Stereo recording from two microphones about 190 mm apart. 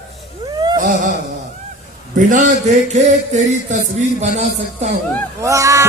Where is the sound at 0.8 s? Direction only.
40° right (ahead or behind).